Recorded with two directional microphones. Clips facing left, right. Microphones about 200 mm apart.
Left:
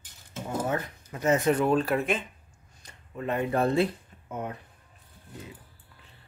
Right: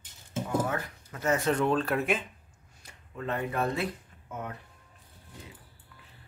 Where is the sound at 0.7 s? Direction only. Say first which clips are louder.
Left 4 dB; 20° left (ahead or behind).